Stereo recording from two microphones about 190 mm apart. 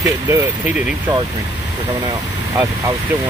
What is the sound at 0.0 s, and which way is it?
Speech, 15° right (ahead or behind).